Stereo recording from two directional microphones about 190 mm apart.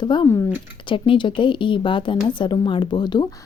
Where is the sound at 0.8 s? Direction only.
25° left (ahead or behind).